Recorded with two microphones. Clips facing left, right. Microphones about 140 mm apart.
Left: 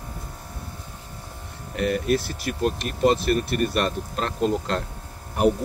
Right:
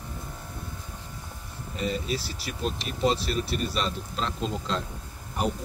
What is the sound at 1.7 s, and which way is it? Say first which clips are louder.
Speech: left 7 dB; 65° left (ahead or behind).